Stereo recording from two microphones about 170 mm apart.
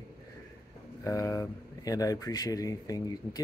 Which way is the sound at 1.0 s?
20° left (ahead or behind).